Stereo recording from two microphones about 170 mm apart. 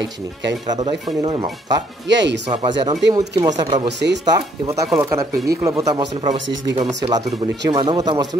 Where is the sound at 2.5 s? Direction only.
30° right (ahead or behind).